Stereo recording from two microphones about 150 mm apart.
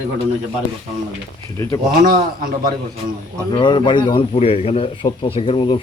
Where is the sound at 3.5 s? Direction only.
30° left (ahead or behind).